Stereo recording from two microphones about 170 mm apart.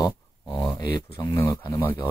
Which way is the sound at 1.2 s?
20° left (ahead or behind).